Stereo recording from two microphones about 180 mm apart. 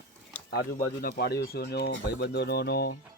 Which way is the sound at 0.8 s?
55° left (ahead or behind).